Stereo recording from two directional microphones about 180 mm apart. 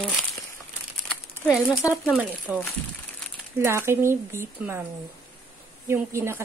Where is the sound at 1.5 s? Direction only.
15° left (ahead or behind).